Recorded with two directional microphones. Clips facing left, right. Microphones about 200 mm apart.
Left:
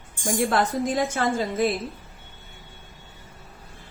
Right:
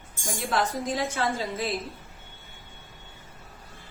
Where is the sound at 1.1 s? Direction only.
50° left (ahead or behind).